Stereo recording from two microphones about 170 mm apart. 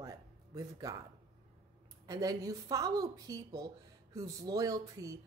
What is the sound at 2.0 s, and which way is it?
Speech, 20° right (ahead or behind).